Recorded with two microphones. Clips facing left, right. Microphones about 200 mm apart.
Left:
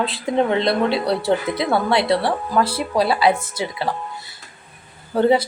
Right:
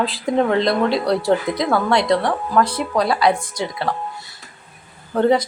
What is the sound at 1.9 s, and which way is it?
Speech, 5° left (ahead or behind).